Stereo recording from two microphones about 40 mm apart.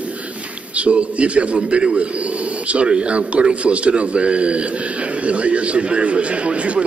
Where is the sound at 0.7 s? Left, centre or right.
Right.